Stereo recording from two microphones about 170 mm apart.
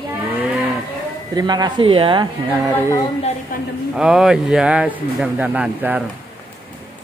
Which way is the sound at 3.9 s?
5° right (ahead or behind).